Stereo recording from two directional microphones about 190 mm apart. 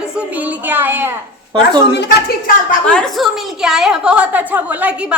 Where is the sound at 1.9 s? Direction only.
60° left (ahead or behind).